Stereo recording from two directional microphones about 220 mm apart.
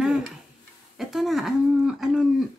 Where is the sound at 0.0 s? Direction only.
5° right (ahead or behind).